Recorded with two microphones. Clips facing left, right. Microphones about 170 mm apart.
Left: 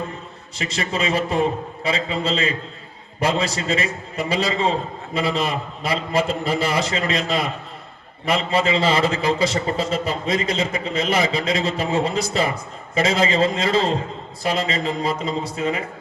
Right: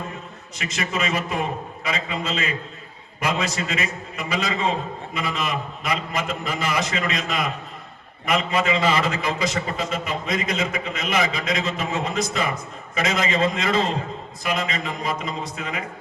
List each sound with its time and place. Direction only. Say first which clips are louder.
0.6 s a man's voice: left 2 dB; 30° left (ahead or behind)